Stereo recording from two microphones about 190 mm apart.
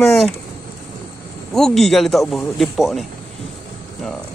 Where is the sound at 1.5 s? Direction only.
Centre (ahead or behind).